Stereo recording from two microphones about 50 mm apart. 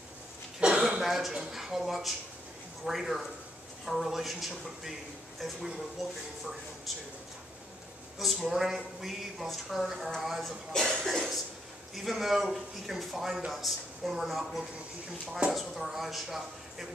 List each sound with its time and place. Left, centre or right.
0.6 s cough: centre
1.0 s a man's voice: centre
8.2 s a woman's voice: centre
10.7 s speech: centre
11.9 s a woman's voice: centre